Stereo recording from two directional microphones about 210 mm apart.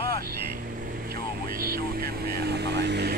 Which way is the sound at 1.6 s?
45° right (ahead or behind).